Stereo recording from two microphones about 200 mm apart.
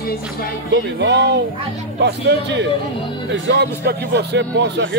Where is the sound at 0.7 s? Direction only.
60° right (ahead or behind).